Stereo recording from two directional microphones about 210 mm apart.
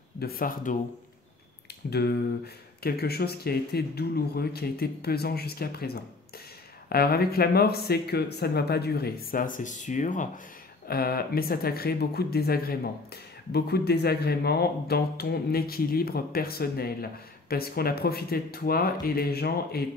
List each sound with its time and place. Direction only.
0.2 s speech: 45° left (ahead or behind)
1.9 s speech: 50° left (ahead or behind)